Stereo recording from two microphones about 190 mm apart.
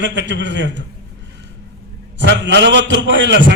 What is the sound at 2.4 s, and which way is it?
A man's voice, 65° right (ahead or behind).